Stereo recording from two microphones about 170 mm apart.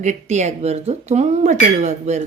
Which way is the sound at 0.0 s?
45° right (ahead or behind).